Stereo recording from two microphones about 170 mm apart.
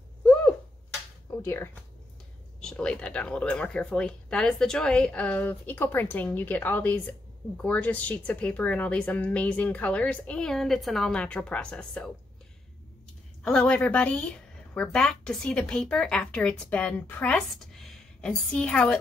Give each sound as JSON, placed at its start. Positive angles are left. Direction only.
{"t": 0.2, "sound": "a sound", "side_deg": 5}
{"t": 1.4, "sound": "speech", "side_deg": 15}
{"t": 13.4, "sound": "a woman's voice", "side_deg": 5}